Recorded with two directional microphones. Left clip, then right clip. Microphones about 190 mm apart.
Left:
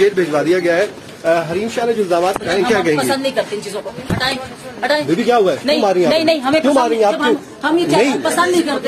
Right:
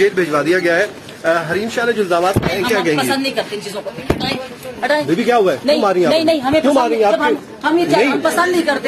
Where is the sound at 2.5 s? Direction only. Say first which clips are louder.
Left 1 dB; 30° left (ahead or behind).